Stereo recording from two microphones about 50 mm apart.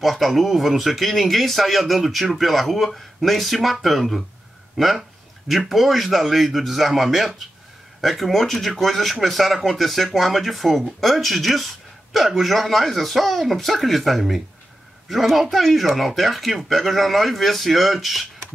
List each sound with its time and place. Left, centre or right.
0.0 s speech: centre